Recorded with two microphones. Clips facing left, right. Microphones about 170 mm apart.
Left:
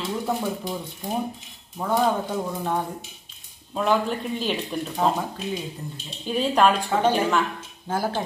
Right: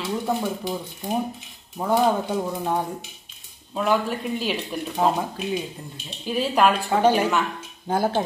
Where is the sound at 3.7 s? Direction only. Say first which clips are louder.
Even; 5° right (ahead or behind).